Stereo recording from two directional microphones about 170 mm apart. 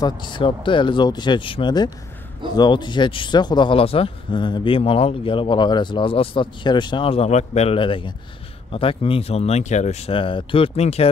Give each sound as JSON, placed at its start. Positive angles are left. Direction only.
{"t": 0.0, "sound": "speech", "side_deg": 25}